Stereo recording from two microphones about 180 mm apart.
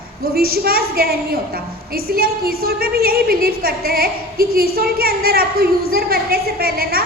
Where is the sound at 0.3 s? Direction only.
55° right (ahead or behind).